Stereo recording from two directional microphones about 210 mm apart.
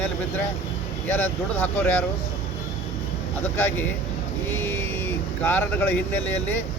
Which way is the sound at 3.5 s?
10° left (ahead or behind).